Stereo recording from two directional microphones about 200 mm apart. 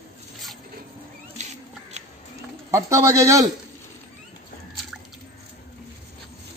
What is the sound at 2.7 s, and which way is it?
Speech, 15° right (ahead or behind).